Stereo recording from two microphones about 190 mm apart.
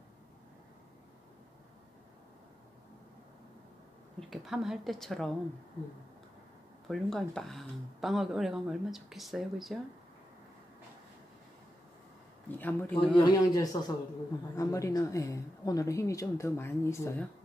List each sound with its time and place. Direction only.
4.2 s speech: centre (ahead or behind)
6.9 s speech: centre (ahead or behind)
12.4 s speech: 10° left (ahead or behind)
13.2 s speech: 20° left (ahead or behind)